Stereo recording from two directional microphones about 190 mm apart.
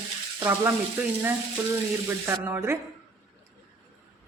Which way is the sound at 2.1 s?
15° right (ahead or behind).